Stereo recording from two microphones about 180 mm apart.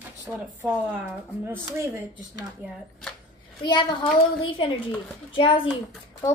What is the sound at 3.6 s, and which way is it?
Speech, 25° left (ahead or behind).